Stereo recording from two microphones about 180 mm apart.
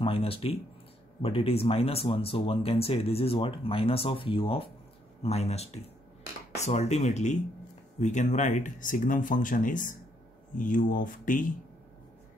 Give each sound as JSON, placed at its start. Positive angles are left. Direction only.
{"t": 0.0, "sound": "speech", "side_deg": 30}